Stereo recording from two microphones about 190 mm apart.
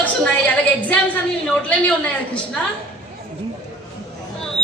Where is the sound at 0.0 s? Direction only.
10° left (ahead or behind).